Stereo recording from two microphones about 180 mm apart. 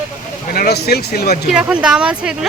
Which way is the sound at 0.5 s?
60° left (ahead or behind).